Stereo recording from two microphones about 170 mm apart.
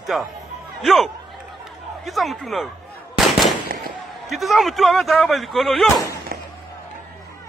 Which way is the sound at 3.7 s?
60° right (ahead or behind).